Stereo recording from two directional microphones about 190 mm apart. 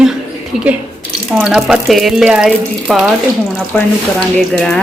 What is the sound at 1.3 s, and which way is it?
Speech, 5° right (ahead or behind).